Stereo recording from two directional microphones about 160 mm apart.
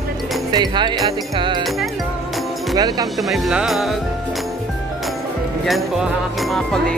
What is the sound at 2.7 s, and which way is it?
Speech, 25° right (ahead or behind).